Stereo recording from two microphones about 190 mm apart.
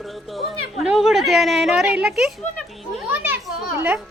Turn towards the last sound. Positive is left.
turn(degrees=-10)  # may be behind; listen again after turning